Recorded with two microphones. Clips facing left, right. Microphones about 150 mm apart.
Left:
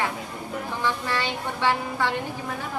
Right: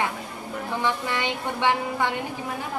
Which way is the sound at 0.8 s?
15° right (ahead or behind).